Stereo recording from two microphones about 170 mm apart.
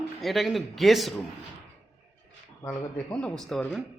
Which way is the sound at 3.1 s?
5° left (ahead or behind).